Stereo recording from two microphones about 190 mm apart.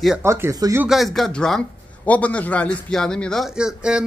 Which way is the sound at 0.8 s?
Centre (ahead or behind).